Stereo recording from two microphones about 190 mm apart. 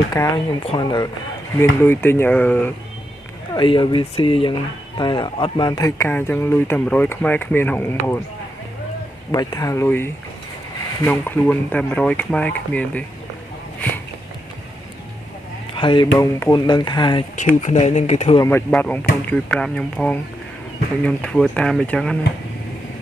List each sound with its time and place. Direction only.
0.1 s speech: 20° left (ahead or behind)
3.5 s speech: 25° left (ahead or behind)
9.3 s speech: 20° left (ahead or behind)
15.7 s speech: 25° left (ahead or behind)
17.6 s speech: 35° left (ahead or behind)
18.7 s speech: 10° left (ahead or behind)